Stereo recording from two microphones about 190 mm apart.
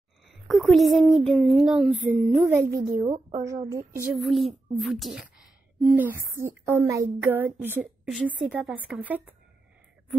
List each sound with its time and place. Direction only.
0.3 s a child's voice: centre (ahead or behind)
2.6 s a woman's voice: 50° right (ahead or behind)
3.7 s speech: 10° right (ahead or behind)
4.2 s speech: centre (ahead or behind)
5.9 s speech: 10° right (ahead or behind)